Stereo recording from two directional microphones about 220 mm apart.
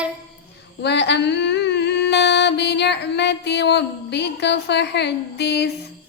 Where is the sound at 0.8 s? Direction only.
50° left (ahead or behind).